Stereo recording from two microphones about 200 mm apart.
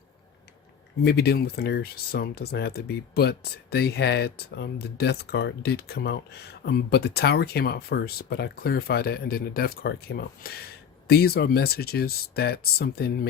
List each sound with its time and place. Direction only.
1.0 s speech: 55° left (ahead or behind)